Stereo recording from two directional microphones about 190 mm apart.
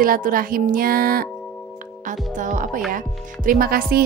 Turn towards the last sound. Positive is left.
turn(degrees=-50)  # may be behind; listen again after turning